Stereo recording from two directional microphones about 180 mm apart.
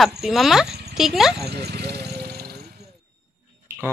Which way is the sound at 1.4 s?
65° right (ahead or behind).